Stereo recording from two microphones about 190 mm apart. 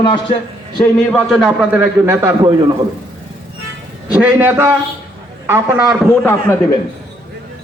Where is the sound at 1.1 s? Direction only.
5° left (ahead or behind); by 2.5 s 15° right (ahead or behind).